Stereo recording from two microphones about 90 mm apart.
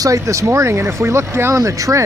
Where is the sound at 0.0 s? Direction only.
35° right (ahead or behind).